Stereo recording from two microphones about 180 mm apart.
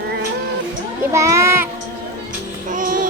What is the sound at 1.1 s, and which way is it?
Speech, 15° right (ahead or behind).